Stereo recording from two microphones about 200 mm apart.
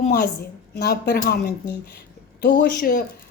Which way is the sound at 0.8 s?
50° left (ahead or behind).